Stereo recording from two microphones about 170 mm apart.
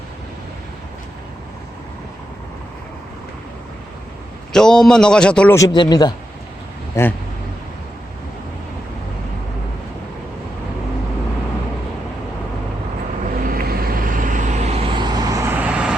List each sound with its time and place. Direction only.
4.5 s a man's voice: 5° left (ahead or behind)
5.5 s speech: 25° left (ahead or behind)
13.4 s vehicle: 55° right (ahead or behind); by 16.0 s 5° right (ahead or behind)